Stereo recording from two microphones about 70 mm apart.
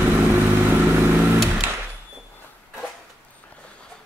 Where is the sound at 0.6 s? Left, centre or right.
Right.